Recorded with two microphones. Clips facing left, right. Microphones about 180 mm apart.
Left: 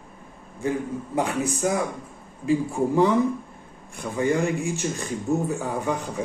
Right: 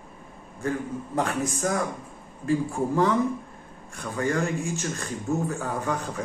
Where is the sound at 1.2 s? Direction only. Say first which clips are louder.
Left 2 dB; 10° left (ahead or behind).